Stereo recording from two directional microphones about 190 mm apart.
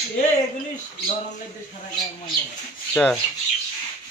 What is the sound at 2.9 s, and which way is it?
Speech, 5° left (ahead or behind).